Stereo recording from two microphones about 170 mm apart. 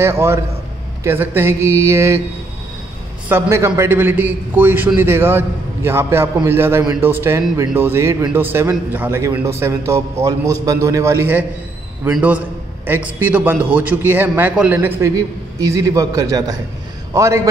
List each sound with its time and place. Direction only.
0.0 s speech: 15° right (ahead or behind)
3.3 s a man's voice: 15° right (ahead or behind)